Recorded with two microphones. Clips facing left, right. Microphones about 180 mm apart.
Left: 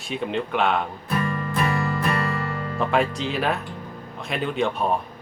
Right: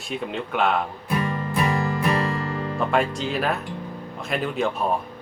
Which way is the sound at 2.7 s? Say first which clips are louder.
Left 1 dB; centre (ahead or behind).